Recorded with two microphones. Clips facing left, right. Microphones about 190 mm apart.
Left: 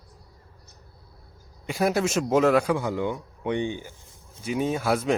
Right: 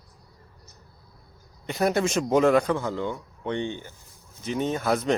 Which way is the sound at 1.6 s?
5° left (ahead or behind).